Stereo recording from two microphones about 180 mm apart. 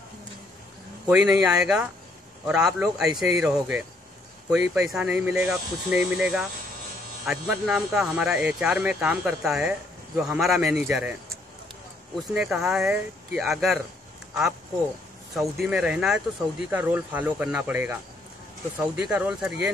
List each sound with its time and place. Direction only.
1.0 s speech: 5° right (ahead or behind)
12.4 s speech: 5° right (ahead or behind)
15.3 s speech: centre (ahead or behind)